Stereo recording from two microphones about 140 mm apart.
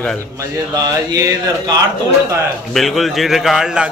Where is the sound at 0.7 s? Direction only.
25° right (ahead or behind).